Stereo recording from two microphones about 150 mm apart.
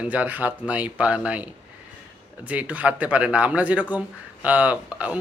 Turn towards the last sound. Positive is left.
turn(degrees=-10)  # may be behind; listen again after turning